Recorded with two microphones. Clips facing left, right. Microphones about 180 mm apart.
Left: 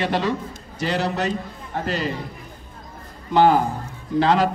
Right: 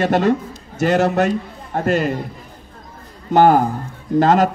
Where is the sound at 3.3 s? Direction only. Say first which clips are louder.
Right 4 dB; 45° right (ahead or behind).